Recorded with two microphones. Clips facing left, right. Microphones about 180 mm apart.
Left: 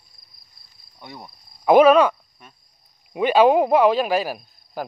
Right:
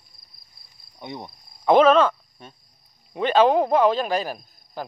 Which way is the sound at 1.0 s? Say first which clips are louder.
Right 5 dB; 20° right (ahead or behind).